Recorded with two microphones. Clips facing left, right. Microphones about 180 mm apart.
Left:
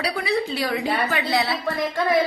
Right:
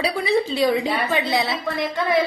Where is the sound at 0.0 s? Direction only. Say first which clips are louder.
Right 3 dB; 25° right (ahead or behind).